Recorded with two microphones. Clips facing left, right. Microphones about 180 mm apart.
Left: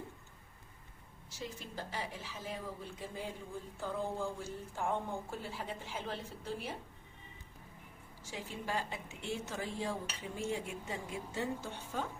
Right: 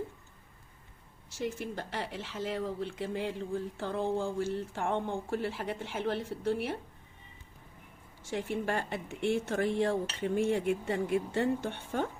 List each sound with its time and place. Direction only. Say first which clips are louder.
1.4 s speech: right 8 dB; 70° right (ahead or behind)
8.3 s speech: right 7 dB; 65° right (ahead or behind)